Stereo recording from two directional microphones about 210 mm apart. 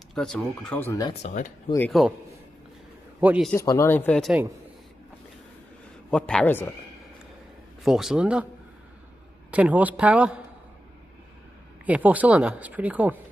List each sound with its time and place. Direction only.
0.1 s speech: centre (ahead or behind)
1.2 s speech: 35° left (ahead or behind)
1.9 s speech: centre (ahead or behind)
3.2 s speech: 5° right (ahead or behind)
3.5 s speech: 15° left (ahead or behind)
6.0 s speech: 5° left (ahead or behind)
7.8 s speech: centre (ahead or behind)
9.5 s speech: 5° right (ahead or behind)
11.8 s speech: 5° right (ahead or behind)